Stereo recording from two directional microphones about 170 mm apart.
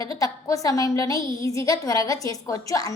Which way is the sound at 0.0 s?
20° left (ahead or behind).